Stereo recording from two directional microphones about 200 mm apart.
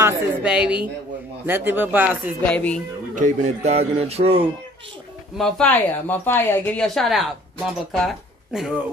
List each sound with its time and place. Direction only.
0.0 s a woman's voice: 5° right (ahead or behind)
2.4 s speech: 5° left (ahead or behind)
3.2 s speech: 35° right (ahead or behind)
5.4 s speech: 5° left (ahead or behind)